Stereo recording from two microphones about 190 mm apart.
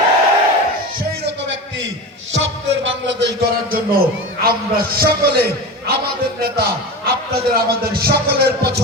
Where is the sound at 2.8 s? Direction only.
70° right (ahead or behind).